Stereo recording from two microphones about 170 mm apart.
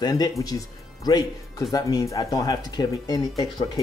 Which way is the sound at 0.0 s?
25° left (ahead or behind).